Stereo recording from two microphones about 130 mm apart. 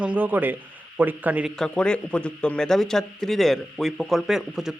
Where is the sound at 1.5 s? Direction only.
5° left (ahead or behind).